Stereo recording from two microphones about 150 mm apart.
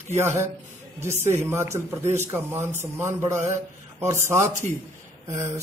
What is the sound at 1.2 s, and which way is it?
A man's voice, 15° right (ahead or behind).